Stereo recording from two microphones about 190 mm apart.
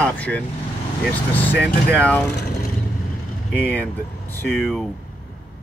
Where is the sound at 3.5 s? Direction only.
10° left (ahead or behind).